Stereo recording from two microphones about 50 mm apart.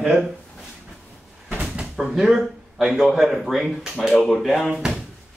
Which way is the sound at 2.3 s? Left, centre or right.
Centre.